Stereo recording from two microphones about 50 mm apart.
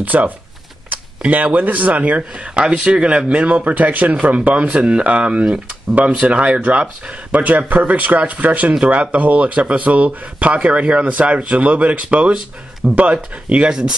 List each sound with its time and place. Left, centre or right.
0.0 s a man's voice: right
13.7 s speech: centre